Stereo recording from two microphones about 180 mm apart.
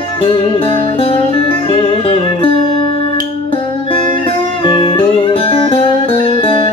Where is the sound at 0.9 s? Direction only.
30° left (ahead or behind).